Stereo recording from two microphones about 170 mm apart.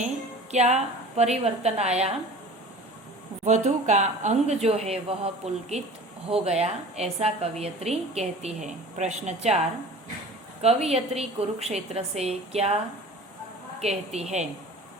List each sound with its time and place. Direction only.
0.5 s a woman's voice: 40° right (ahead or behind)
3.4 s a woman's voice: 45° right (ahead or behind)
10.6 s a woman's voice: 35° right (ahead or behind)